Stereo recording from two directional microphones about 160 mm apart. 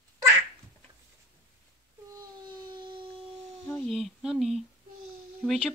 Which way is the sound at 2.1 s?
30° right (ahead or behind).